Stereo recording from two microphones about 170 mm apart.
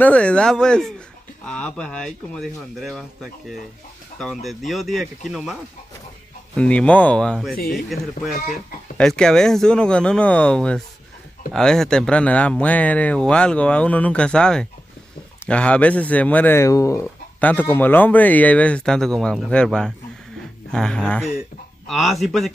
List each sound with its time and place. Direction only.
0.0 s speech: 5° left (ahead or behind)
7.5 s speech: 60° left (ahead or behind)
8.9 s speech: 5° left (ahead or behind)